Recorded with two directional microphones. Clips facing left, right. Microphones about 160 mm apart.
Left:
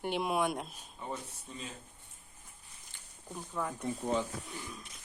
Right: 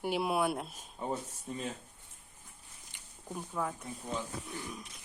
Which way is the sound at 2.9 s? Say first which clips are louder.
Right 3 dB; 10° right (ahead or behind).